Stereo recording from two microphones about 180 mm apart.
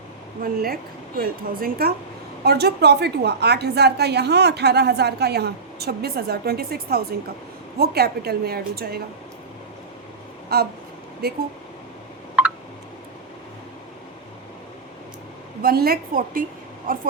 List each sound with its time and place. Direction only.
0.4 s a woman's voice: 55° right (ahead or behind)
10.5 s a woman's voice: 60° right (ahead or behind)
15.6 s a woman's voice: 55° right (ahead or behind)